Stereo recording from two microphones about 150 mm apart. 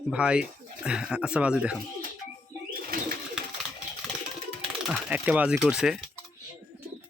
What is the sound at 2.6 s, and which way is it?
Bird, 75° right (ahead or behind).